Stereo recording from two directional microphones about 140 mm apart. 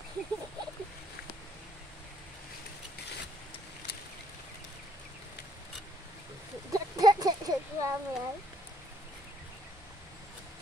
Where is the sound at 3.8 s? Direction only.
50° left (ahead or behind).